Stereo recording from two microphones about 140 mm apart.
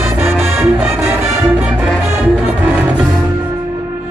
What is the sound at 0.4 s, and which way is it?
Music, 15° right (ahead or behind).